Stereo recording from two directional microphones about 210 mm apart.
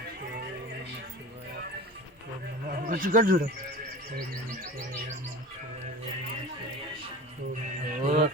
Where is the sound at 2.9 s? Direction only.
40° right (ahead or behind).